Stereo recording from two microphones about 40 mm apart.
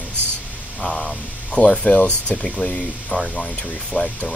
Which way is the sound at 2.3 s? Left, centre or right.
Left.